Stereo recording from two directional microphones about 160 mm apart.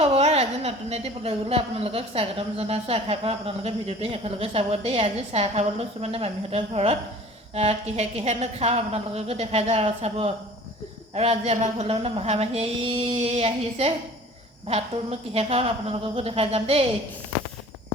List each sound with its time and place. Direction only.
0.0 s a woman's voice: 40° right (ahead or behind)